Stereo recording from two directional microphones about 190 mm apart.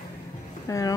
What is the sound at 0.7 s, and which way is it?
Speech, 15° left (ahead or behind).